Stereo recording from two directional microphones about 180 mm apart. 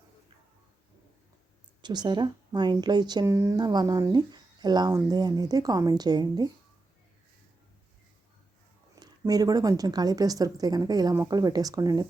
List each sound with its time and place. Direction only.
1.8 s a woman's voice: 25° right (ahead or behind)
9.0 s a woman's voice: 20° right (ahead or behind)